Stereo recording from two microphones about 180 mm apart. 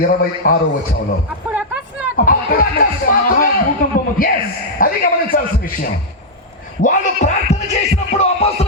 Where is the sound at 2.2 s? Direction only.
50° left (ahead or behind).